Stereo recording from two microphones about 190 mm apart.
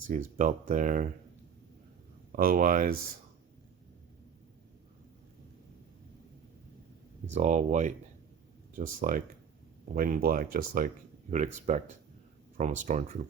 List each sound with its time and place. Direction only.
0.1 s speech: 45° right (ahead or behind)
2.3 s speech: 45° right (ahead or behind)
7.3 s speech: 40° right (ahead or behind)